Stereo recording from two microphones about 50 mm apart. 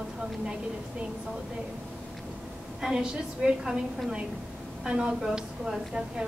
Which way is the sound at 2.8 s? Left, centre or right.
Centre.